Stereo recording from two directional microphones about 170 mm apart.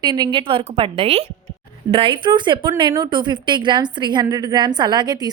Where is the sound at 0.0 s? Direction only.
25° right (ahead or behind).